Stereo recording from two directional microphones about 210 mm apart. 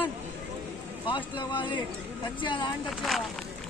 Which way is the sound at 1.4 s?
20° left (ahead or behind).